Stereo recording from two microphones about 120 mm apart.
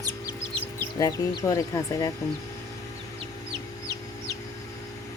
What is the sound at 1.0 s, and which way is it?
Speech, 30° left (ahead or behind).